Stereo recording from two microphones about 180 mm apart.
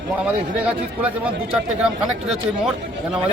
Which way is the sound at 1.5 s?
5° right (ahead or behind).